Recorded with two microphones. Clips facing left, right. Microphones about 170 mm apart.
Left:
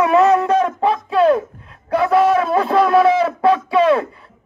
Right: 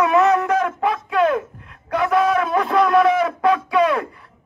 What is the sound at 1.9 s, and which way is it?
A man's voice, 30° left (ahead or behind).